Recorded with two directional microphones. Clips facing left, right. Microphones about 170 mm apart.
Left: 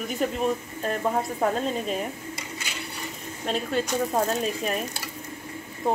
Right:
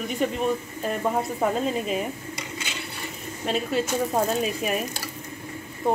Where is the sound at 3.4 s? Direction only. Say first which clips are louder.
Right 1 dB; 5° right (ahead or behind).